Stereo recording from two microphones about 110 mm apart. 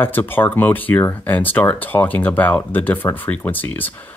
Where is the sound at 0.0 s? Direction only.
20° left (ahead or behind).